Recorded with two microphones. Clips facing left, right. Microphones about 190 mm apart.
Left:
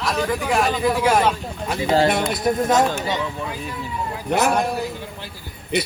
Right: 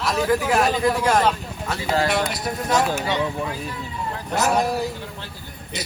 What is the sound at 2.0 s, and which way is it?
Speech, 50° left (ahead or behind).